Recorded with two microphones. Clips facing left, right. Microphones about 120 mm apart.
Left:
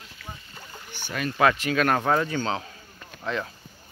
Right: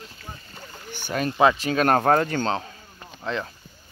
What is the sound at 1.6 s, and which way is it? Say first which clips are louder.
Speech: right 3 dB; 30° right (ahead or behind).